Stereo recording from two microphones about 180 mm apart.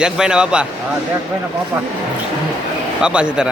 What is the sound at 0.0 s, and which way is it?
Speech, 5° right (ahead or behind).